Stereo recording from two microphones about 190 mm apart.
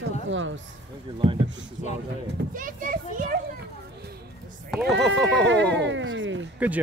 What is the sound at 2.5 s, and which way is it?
Speech, 45° right (ahead or behind).